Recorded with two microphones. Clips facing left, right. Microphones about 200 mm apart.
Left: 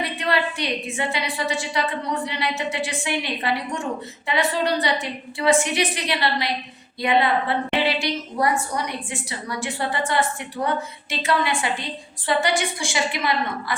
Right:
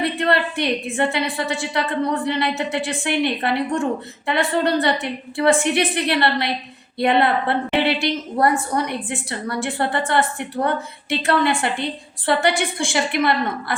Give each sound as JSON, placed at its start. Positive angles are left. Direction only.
{"t": 0.2, "sound": "a woman's voice", "side_deg": -55}